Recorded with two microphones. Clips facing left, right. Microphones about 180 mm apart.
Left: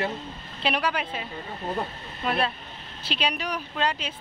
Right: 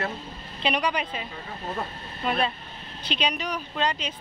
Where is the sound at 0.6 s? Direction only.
5° left (ahead or behind).